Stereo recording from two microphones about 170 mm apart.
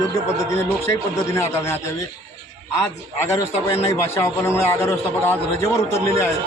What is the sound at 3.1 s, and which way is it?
A man's voice, 15° left (ahead or behind).